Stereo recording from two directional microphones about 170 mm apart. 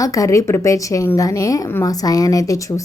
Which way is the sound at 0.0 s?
20° left (ahead or behind).